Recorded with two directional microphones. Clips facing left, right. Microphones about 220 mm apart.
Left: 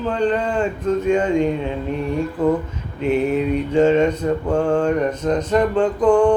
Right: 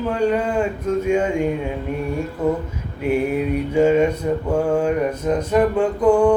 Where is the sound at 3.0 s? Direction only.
10° right (ahead or behind).